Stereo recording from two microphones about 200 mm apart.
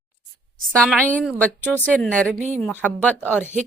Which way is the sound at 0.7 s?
5° left (ahead or behind).